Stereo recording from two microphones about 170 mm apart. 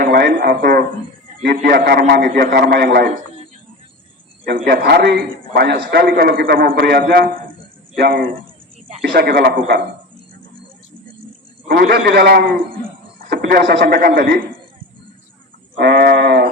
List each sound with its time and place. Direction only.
0.0 s a man's voice: 65° right (ahead or behind)
4.4 s a man's voice: 65° right (ahead or behind)
11.7 s a man's voice: 65° right (ahead or behind)
15.8 s a sound: 65° right (ahead or behind)